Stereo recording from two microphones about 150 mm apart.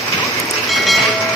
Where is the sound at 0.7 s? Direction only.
Centre (ahead or behind).